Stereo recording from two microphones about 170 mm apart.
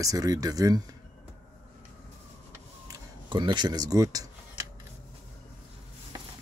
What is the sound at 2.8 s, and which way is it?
Speech, 25° right (ahead or behind).